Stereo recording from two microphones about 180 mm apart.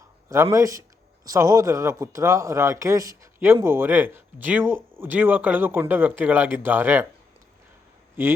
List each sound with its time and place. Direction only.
0.5 s speech: 15° right (ahead or behind)
8.1 s speech: 15° right (ahead or behind)